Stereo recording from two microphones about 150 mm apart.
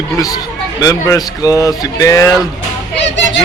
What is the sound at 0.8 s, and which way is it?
Music, 25° left (ahead or behind).